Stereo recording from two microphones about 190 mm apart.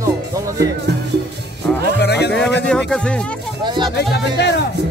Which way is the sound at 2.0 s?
60° left (ahead or behind).